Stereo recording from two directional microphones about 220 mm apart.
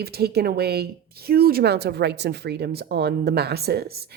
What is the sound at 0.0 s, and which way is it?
Speech, 45° right (ahead or behind).